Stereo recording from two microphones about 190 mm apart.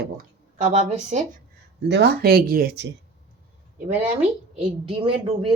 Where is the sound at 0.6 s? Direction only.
40° right (ahead or behind).